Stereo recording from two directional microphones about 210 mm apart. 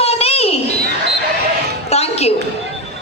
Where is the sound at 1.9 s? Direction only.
30° left (ahead or behind).